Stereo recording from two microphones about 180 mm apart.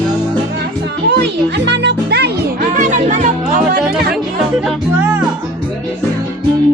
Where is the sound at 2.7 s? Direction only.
45° right (ahead or behind).